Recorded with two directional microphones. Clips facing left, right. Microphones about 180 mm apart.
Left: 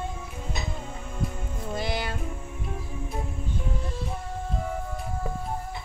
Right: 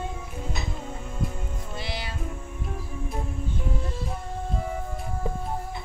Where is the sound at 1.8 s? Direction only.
50° left (ahead or behind).